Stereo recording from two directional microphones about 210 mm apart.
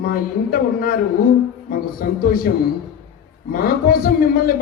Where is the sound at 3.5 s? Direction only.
45° left (ahead or behind).